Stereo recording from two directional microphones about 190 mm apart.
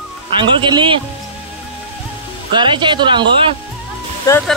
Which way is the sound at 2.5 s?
25° right (ahead or behind).